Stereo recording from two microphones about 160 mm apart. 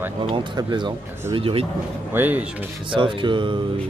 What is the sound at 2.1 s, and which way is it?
Speech, 10° right (ahead or behind).